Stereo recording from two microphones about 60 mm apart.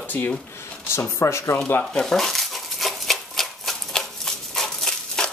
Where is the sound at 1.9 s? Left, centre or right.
Centre.